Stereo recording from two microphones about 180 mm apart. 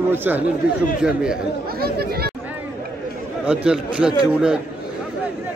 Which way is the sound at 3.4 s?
5° right (ahead or behind).